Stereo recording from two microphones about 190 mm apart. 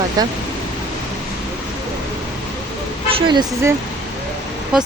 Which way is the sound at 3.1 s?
25° right (ahead or behind).